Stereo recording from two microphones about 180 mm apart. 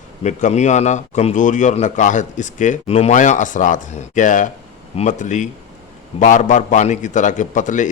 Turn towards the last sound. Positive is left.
turn(degrees=45)  # may be behind; listen again after turning